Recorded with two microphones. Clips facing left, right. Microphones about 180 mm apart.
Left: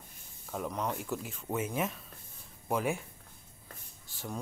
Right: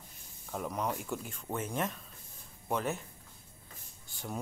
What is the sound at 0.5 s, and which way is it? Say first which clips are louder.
Speech: even; centre (ahead or behind).